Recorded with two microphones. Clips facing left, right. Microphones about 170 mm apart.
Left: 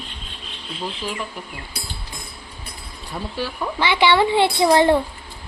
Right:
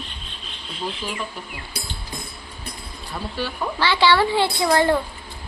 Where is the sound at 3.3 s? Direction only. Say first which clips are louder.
Left 1 dB; 15° left (ahead or behind).